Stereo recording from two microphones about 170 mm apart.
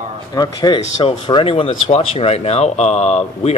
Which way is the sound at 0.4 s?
25° left (ahead or behind).